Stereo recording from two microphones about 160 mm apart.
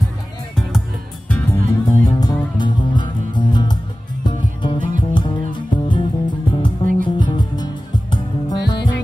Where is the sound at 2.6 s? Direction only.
30° left (ahead or behind).